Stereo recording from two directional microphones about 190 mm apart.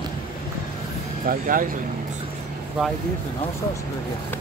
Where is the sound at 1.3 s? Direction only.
45° right (ahead or behind).